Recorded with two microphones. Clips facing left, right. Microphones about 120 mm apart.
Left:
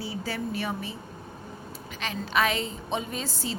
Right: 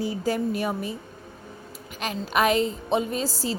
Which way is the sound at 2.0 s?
45° right (ahead or behind).